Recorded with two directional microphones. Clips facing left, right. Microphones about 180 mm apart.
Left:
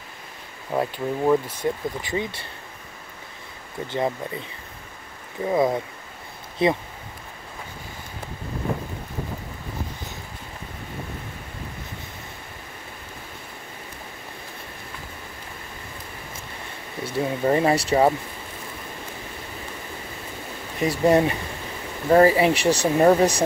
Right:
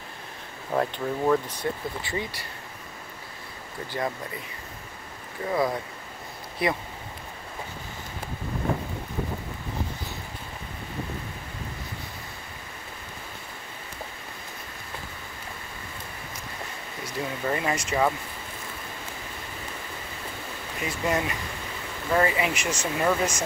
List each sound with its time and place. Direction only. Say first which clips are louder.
0.7 s speech: left 2 dB; 10° left (ahead or behind)
3.8 s speech: left 5 dB; 25° left (ahead or behind)
17.0 s speech: left 7 dB; 30° left (ahead or behind)
20.8 s speech: left 9 dB; 35° left (ahead or behind)